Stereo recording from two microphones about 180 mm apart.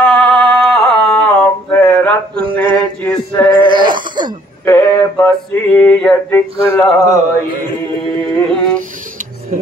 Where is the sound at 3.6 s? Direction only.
25° right (ahead or behind).